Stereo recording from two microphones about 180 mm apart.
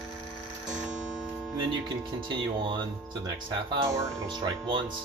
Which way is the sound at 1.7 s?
25° right (ahead or behind).